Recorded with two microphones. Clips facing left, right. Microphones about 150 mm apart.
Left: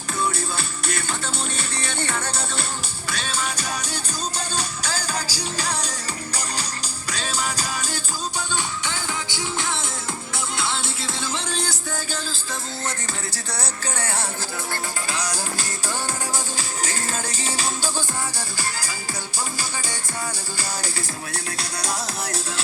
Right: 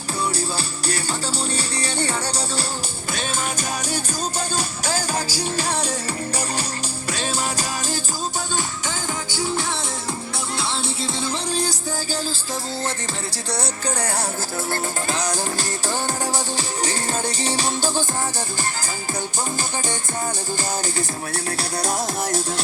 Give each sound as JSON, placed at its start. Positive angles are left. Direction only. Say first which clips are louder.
{"t": 0.5, "sound": "music", "louder": "right 2 dB", "side_deg": -35}
{"t": 2.2, "sound": "speech", "louder": "right 3 dB", "side_deg": -35}
{"t": 3.1, "sound": "music", "louder": "right 2 dB", "side_deg": -45}
{"t": 4.9, "sound": "music", "louder": "right 4 dB", "side_deg": -50}
{"t": 7.1, "sound": "music", "louder": "right 2 dB", "side_deg": -50}
{"t": 13.5, "sound": "music", "louder": "right 6 dB", "side_deg": -35}
{"t": 15.1, "sound": "music", "louder": "right 4 dB", "side_deg": -45}
{"t": 21.8, "sound": "music", "louder": "right 5 dB", "side_deg": -45}